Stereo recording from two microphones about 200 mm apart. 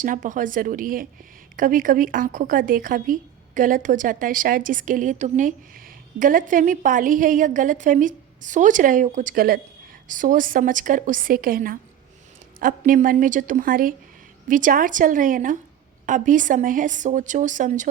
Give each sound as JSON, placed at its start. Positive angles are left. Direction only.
{"t": 0.0, "sound": "a woman's voice", "side_deg": -40}